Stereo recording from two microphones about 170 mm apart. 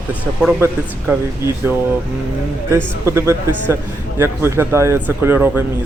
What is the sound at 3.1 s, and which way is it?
Speech, 15° right (ahead or behind).